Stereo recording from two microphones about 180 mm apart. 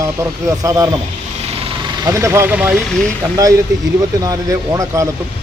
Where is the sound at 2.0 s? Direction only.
15° right (ahead or behind).